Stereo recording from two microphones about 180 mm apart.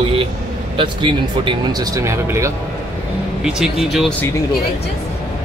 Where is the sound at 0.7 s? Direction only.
25° right (ahead or behind).